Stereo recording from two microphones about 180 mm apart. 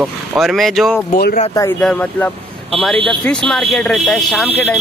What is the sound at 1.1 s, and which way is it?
Speech, 55° left (ahead or behind).